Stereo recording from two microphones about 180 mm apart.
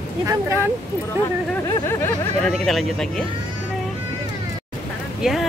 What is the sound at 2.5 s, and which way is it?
Speech, centre (ahead or behind).